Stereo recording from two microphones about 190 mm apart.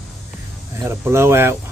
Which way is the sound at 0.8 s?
15° right (ahead or behind).